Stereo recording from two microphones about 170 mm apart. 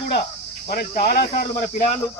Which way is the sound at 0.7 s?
60° left (ahead or behind).